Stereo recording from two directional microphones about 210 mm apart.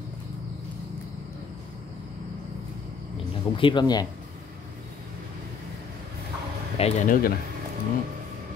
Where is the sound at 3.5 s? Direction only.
20° left (ahead or behind).